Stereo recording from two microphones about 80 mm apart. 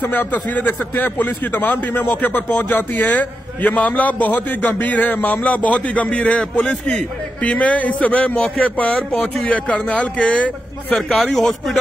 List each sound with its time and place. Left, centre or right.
0.0 s a man's voice: left
11.2 s a man's voice: centre